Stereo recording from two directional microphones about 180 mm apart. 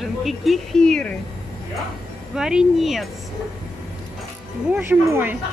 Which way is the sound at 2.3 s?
5° right (ahead or behind).